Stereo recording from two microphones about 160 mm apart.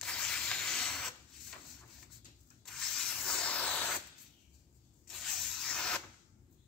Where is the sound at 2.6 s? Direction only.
5° left (ahead or behind).